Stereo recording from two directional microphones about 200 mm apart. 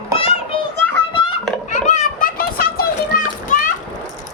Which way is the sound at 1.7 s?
35° left (ahead or behind).